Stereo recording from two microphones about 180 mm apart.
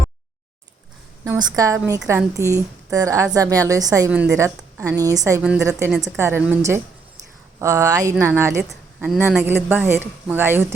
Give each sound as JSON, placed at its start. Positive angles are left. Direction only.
{"t": 1.2, "sound": "a woman's voice", "side_deg": -20}
{"t": 5.4, "sound": "a woman's voice", "side_deg": -5}